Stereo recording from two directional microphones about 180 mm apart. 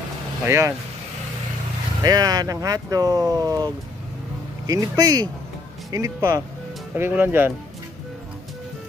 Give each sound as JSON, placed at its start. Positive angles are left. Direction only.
{"t": 0.5, "sound": "speech", "side_deg": -15}
{"t": 2.0, "sound": "speech", "side_deg": -20}